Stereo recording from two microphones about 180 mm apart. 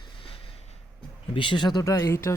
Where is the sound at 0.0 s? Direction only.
30° left (ahead or behind).